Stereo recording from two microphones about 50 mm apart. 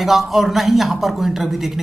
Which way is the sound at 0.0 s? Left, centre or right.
Centre.